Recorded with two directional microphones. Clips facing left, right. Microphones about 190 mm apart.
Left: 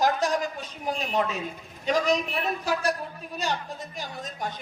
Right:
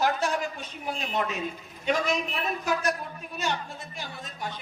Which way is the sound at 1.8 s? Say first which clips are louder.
Left 3 dB; 35° left (ahead or behind).